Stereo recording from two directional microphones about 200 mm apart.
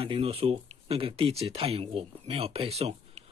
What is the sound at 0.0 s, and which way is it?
Speech, 30° right (ahead or behind).